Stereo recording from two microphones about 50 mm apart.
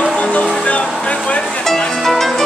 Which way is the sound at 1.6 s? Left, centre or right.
Centre.